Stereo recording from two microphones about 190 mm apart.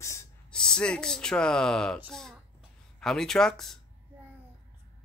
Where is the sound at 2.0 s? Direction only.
Centre (ahead or behind).